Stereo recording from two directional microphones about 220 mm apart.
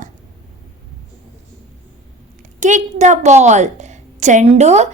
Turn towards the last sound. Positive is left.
turn(degrees=-30)  # may be behind; listen again after turning